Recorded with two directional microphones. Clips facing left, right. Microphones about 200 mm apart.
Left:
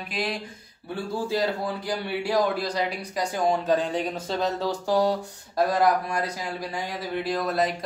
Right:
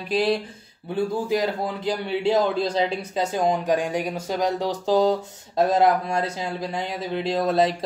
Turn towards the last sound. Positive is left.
turn(degrees=-25)  # may be behind; listen again after turning